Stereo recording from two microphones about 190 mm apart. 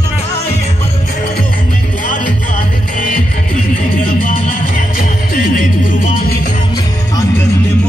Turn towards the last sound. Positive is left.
turn(degrees=45)  # may be behind; listen again after turning